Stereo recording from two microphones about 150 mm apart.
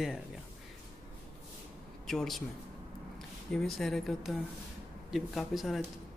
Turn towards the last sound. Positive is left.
turn(degrees=0)  # may be behind; listen again after turning